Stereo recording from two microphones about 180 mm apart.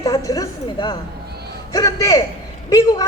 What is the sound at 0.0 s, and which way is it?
A woman's voice, 20° left (ahead or behind).